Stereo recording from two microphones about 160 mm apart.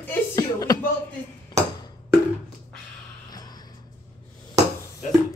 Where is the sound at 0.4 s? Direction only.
25° left (ahead or behind).